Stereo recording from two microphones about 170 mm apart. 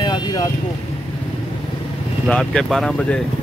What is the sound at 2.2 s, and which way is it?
Speech, 5° left (ahead or behind).